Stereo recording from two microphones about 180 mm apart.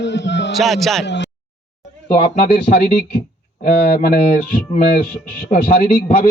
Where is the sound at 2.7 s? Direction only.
45° left (ahead or behind).